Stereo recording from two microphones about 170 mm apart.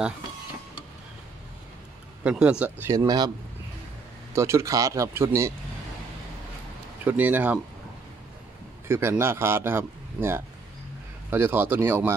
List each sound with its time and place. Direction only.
2.2 s a man's voice: 5° right (ahead or behind)
4.3 s a man's voice: 15° right (ahead or behind)
7.1 s a man's voice: 10° right (ahead or behind)
8.8 s a man's voice: 15° right (ahead or behind)